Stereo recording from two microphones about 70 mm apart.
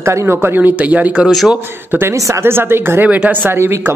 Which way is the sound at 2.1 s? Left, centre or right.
Right.